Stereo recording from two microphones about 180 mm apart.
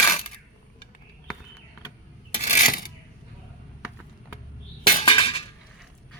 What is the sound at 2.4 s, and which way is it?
Coin, 45° left (ahead or behind).